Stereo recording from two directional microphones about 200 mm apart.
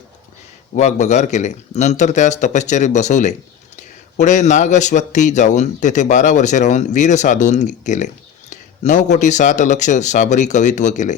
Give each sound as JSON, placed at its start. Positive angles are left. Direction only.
{"t": 0.8, "sound": "speech", "side_deg": 35}